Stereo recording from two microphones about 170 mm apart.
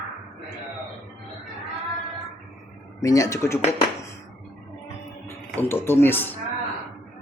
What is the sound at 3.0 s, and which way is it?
Speech, 20° left (ahead or behind).